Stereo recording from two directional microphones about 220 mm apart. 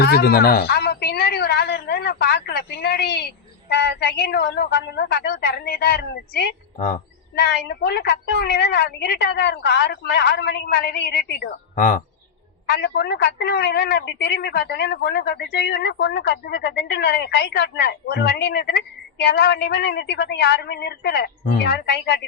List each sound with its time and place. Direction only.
0.0 s a sound: 45° left (ahead or behind)
3.7 s a woman's voice: 50° left (ahead or behind)
12.6 s a woman's voice: 50° left (ahead or behind)